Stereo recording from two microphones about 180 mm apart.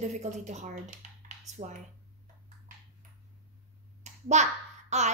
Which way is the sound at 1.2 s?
40° right (ahead or behind).